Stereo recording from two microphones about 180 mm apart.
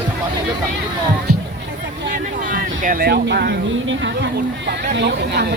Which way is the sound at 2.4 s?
50° right (ahead or behind).